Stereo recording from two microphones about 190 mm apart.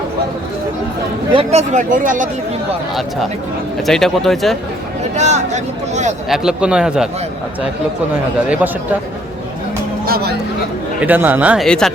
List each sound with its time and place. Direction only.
1.3 s speech: 30° right (ahead or behind)
3.8 s a man's voice: centre (ahead or behind)
5.1 s speech: 35° right (ahead or behind)
6.2 s a man's voice: centre (ahead or behind)
8.4 s speech: 5° right (ahead or behind)
11.0 s speech: 10° right (ahead or behind)